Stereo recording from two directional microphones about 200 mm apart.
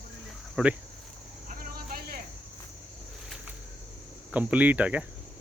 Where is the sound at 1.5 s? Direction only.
45° right (ahead or behind).